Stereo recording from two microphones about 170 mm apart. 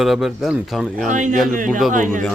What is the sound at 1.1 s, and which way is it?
Speech, 45° right (ahead or behind).